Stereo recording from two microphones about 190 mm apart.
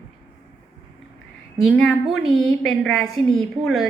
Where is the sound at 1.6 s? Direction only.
5° left (ahead or behind).